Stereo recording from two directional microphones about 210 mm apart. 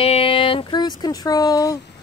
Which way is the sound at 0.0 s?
25° left (ahead or behind).